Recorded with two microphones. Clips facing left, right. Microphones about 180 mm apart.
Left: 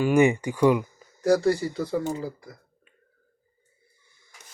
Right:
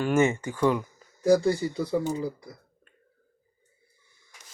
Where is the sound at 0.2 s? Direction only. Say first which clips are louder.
Left 4 dB; 15° left (ahead or behind).